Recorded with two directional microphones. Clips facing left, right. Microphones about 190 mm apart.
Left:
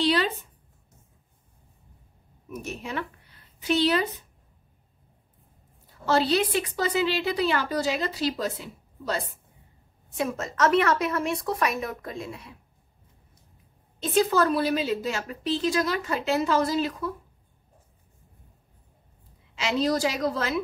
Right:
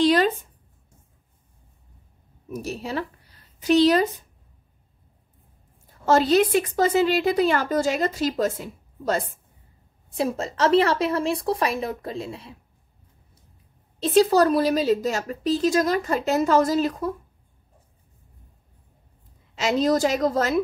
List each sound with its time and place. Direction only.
0.0 s a sound: 45° right (ahead or behind)
2.5 s speech: 35° right (ahead or behind)
6.0 s a woman's voice: 45° right (ahead or behind)
10.1 s a woman's voice: 30° right (ahead or behind)
13.9 s a woman's voice: 35° right (ahead or behind)
19.5 s a woman's voice: 45° right (ahead or behind)